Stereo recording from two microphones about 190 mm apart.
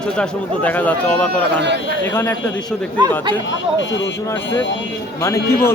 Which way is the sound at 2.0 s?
10° left (ahead or behind).